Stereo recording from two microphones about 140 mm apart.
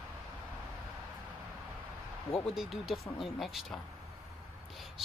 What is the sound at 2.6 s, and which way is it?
Speech, centre (ahead or behind).